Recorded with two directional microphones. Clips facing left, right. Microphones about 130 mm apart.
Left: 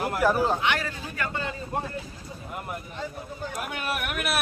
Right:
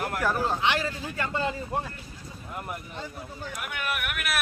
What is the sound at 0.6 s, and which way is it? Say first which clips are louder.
Speech: right 1 dB; 25° right (ahead or behind).